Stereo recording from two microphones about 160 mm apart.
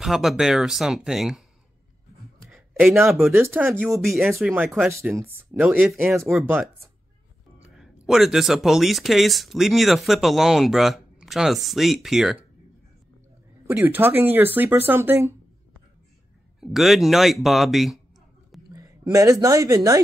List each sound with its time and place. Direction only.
0.0 s speech: centre (ahead or behind)
2.5 s a sound: centre (ahead or behind)
3.3 s speech: 15° right (ahead or behind)
3.9 s speech: centre (ahead or behind)
4.6 s speech: 10° right (ahead or behind)
7.6 s speech: 5° right (ahead or behind)
13.7 s speech: 10° right (ahead or behind)
16.5 s speech: centre (ahead or behind)
18.7 s a sound: 20° right (ahead or behind)
19.4 s speech: 20° right (ahead or behind)